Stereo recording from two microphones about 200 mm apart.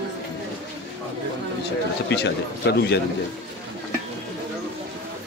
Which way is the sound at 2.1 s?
60° left (ahead or behind).